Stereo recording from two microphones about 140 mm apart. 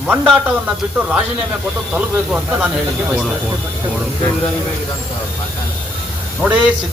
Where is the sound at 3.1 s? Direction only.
5° right (ahead or behind).